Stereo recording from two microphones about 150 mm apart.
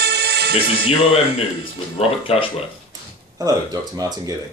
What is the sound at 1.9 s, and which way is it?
Speech, 40° left (ahead or behind).